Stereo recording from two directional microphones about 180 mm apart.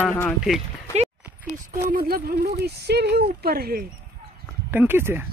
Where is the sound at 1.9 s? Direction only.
55° right (ahead or behind).